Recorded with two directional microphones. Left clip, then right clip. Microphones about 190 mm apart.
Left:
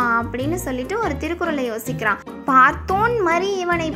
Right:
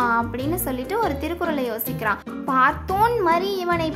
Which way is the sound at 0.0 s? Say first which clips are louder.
Left 2 dB; 5° left (ahead or behind).